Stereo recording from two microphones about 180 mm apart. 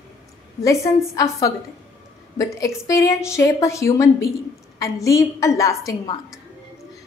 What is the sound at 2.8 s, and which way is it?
A woman's voice, 15° left (ahead or behind).